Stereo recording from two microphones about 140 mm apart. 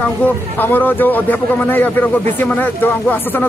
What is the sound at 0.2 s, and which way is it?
A man's voice, 15° left (ahead or behind).